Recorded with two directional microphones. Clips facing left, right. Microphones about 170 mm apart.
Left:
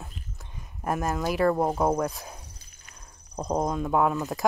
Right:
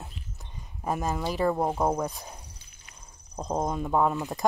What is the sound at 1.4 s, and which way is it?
Speech, centre (ahead or behind).